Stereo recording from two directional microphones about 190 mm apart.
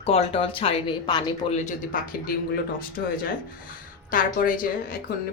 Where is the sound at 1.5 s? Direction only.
40° left (ahead or behind).